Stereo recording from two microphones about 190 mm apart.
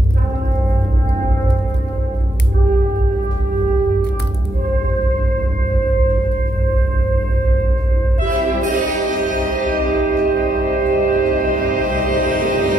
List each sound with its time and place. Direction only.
8.2 s music: 45° right (ahead or behind)